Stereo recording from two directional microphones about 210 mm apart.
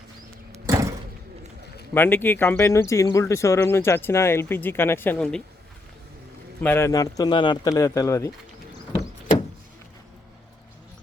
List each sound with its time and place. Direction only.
0.5 s door: 15° right (ahead or behind)
1.9 s speech: 10° left (ahead or behind)
6.6 s speech: 10° left (ahead or behind)